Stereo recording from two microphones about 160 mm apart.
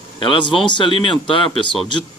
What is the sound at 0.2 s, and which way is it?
Speech, 35° left (ahead or behind).